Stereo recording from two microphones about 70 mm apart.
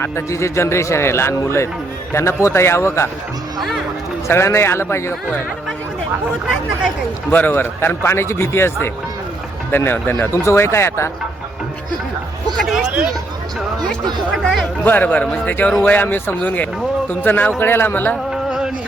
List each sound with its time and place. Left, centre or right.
0.0 s speech: left
3.6 s speech: centre
4.3 s speech: left
7.3 s speech: left
14.4 s speech: centre
14.8 s speech: left
18.3 s music: centre